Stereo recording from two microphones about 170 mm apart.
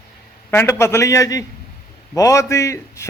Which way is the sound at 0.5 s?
15° left (ahead or behind).